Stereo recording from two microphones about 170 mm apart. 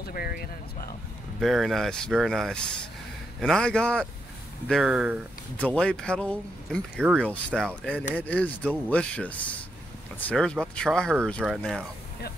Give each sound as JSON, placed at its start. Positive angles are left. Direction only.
{"t": 0.0, "sound": "speech", "side_deg": 60}
{"t": 1.4, "sound": "speech", "side_deg": 0}
{"t": 5.6, "sound": "speech", "side_deg": 5}